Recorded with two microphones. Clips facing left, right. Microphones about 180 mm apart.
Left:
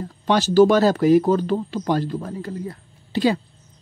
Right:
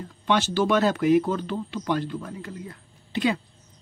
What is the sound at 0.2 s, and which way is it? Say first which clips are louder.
Speech: left 8 dB; 40° left (ahead or behind).